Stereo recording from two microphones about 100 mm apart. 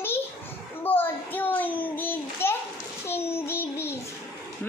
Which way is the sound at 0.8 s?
20° left (ahead or behind).